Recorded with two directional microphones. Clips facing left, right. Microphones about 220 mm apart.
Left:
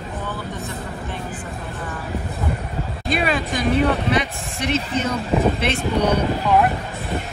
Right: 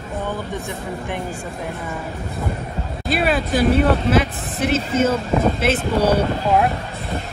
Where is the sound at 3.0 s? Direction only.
5° right (ahead or behind).